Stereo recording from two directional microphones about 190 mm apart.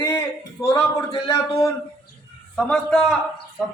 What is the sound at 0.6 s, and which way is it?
Speech, 15° left (ahead or behind).